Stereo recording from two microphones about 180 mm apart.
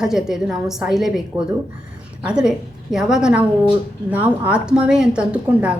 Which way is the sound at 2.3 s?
5° right (ahead or behind).